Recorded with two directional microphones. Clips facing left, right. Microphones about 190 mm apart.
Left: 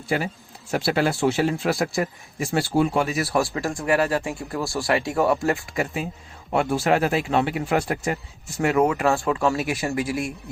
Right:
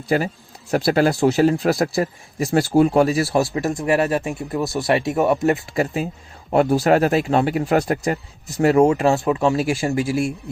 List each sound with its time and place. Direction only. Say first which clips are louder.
0.1 s speech: right 5 dB; 40° right (ahead or behind)
3.2 s speech: right 4 dB; 25° right (ahead or behind)
5.7 s speech: right 5 dB; 35° right (ahead or behind)